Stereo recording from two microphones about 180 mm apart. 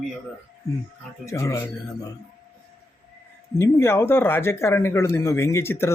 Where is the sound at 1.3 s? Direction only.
15° left (ahead or behind).